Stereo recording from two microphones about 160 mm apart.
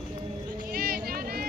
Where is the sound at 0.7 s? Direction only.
70° right (ahead or behind).